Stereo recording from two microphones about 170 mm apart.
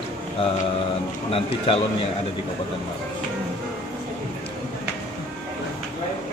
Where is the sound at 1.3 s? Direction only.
35° left (ahead or behind).